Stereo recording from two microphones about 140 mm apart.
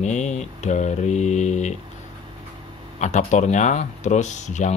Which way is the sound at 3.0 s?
60° left (ahead or behind).